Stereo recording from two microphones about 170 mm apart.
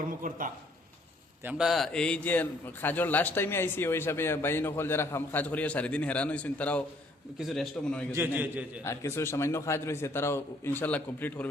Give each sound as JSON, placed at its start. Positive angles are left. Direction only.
{"t": 0.0, "sound": "speech", "side_deg": -50}
{"t": 1.5, "sound": "a man's voice", "side_deg": -5}
{"t": 8.1, "sound": "a man's voice", "side_deg": -10}
{"t": 8.8, "sound": "a man's voice", "side_deg": 15}